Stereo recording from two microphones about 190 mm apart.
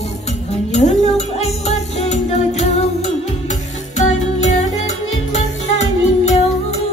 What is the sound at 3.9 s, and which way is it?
Music, 40° left (ahead or behind).